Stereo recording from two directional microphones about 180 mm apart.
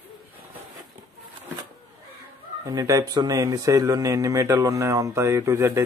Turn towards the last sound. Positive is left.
turn(degrees=-15)  # may be behind; listen again after turning